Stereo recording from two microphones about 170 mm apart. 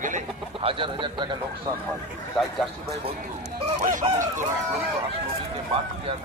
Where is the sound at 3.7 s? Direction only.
45° right (ahead or behind).